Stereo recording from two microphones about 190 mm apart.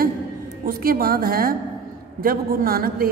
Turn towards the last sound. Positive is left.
turn(degrees=-50)  # may be behind; listen again after turning